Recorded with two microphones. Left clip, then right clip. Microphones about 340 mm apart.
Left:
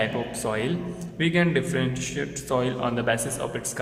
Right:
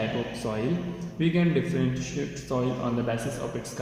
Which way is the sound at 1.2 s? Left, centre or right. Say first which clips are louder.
Left 3 dB; left.